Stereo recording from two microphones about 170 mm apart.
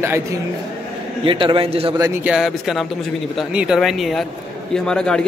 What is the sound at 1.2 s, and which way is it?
Speech, 30° right (ahead or behind).